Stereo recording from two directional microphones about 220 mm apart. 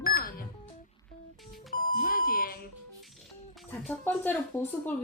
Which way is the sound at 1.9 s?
40° left (ahead or behind).